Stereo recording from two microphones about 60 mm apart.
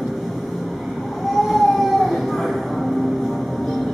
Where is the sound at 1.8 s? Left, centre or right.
Centre.